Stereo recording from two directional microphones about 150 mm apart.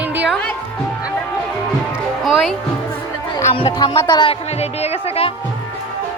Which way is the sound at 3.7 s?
30° left (ahead or behind).